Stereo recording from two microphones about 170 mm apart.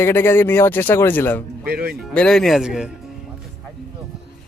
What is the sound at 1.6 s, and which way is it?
Speech, 65° right (ahead or behind).